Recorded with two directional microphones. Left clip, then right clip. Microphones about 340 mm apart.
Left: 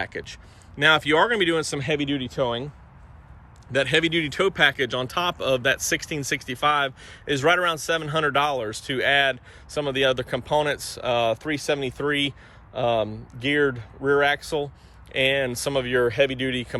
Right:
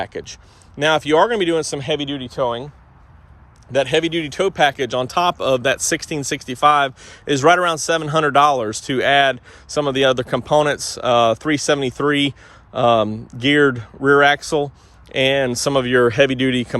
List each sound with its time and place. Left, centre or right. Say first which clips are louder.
0.0 s speech: right 4 dB; centre
3.7 s speech: right 4 dB; centre